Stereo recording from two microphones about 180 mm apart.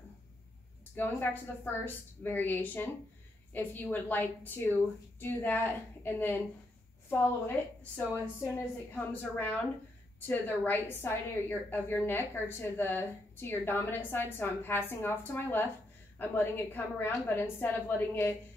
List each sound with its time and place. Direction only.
0.9 s a woman's voice: 10° left (ahead or behind)